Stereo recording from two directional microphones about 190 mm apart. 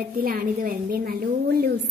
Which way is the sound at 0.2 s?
50° right (ahead or behind).